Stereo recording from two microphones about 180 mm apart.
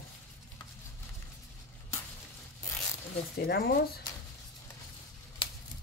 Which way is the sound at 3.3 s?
55° left (ahead or behind).